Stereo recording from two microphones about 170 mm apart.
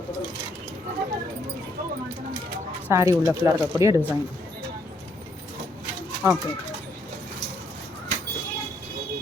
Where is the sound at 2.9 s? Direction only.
15° right (ahead or behind).